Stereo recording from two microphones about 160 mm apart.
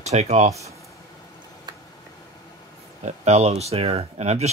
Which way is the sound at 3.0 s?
45° right (ahead or behind).